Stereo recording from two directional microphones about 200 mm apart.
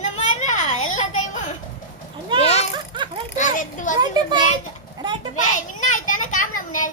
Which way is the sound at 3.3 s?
40° left (ahead or behind).